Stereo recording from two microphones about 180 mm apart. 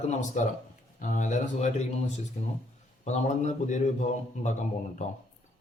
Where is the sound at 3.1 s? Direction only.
40° left (ahead or behind).